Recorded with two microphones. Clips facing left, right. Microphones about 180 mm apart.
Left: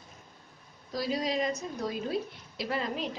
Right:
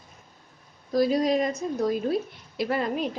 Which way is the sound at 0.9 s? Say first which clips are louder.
Right 9 dB; 50° right (ahead or behind).